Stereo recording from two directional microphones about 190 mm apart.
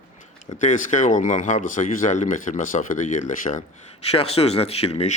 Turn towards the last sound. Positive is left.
turn(degrees=35)  # may be behind; listen again after turning